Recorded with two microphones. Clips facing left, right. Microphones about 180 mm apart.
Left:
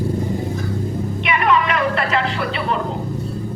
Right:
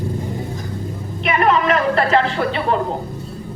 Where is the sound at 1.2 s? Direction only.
45° right (ahead or behind).